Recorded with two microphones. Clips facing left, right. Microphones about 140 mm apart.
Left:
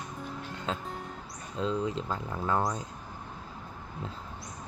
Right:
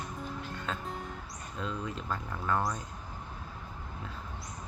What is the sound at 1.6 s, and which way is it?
Speech, 25° left (ahead or behind).